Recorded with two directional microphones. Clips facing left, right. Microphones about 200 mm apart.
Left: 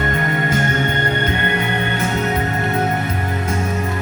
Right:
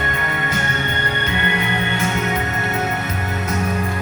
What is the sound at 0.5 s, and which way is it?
Music, 45° left (ahead or behind).